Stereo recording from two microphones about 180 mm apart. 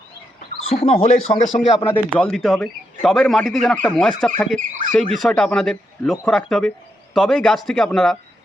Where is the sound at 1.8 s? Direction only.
5° left (ahead or behind).